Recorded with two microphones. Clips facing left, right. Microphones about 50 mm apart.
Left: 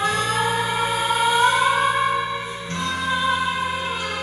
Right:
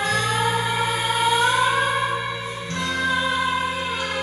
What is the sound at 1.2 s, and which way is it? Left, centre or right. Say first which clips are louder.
Siren: left 1 dB; left.